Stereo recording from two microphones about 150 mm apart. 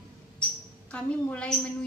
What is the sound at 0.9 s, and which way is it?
Speech, 10° left (ahead or behind).